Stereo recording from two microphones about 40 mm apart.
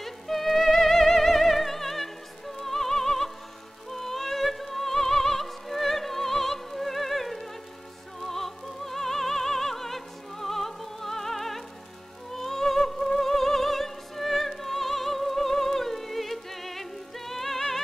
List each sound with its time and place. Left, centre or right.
0.0 s music: centre
3.9 s opera: centre
8.2 s music: centre
12.4 s opera: centre
17.3 s music: centre